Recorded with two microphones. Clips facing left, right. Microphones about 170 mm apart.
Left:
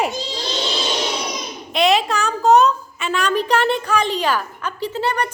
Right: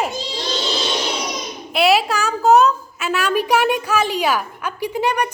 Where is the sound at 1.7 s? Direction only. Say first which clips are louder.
Right 1 dB; 5° right (ahead or behind).